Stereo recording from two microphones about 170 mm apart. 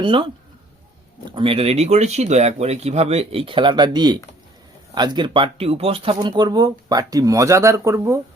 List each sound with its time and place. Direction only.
0.0 s speech: 30° right (ahead or behind)